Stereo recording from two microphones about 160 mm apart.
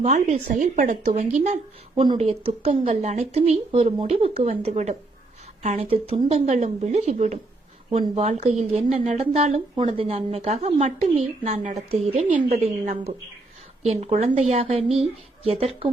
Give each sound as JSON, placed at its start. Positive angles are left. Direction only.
{"t": 0.0, "sound": "a woman's voice", "side_deg": -45}
{"t": 12.8, "sound": "speech", "side_deg": -50}
{"t": 13.8, "sound": "a woman's voice", "side_deg": -40}